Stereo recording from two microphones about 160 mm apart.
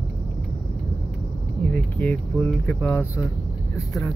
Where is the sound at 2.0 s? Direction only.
10° left (ahead or behind).